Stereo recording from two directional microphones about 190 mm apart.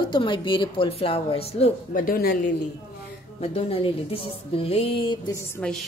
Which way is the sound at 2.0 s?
50° left (ahead or behind).